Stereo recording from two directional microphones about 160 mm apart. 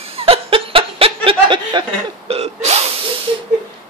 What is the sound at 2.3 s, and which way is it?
Speech, 40° right (ahead or behind).